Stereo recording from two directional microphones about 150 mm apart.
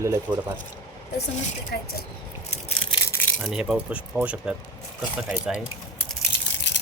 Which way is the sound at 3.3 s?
Centre (ahead or behind).